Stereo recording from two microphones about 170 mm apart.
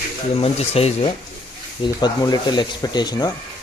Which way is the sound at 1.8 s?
25° left (ahead or behind).